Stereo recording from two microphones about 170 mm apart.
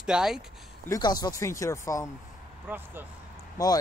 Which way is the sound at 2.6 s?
10° right (ahead or behind).